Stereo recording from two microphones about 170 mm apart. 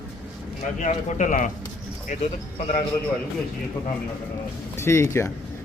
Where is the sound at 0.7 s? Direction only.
45° left (ahead or behind).